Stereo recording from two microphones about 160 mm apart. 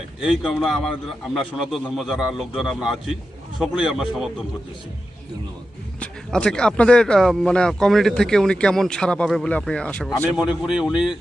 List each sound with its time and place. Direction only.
0.2 s speech: centre (ahead or behind)
6.0 s speech: 5° left (ahead or behind)
10.2 s speech: 5° right (ahead or behind)